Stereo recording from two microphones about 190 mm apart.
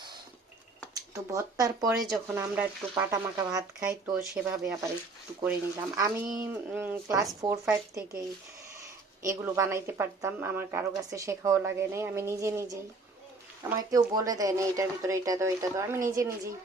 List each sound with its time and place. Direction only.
1.1 s speech: 15° right (ahead or behind)
9.2 s speech: 15° right (ahead or behind)